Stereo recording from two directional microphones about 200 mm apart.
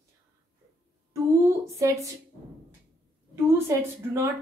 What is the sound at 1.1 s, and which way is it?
A woman's voice, 15° right (ahead or behind).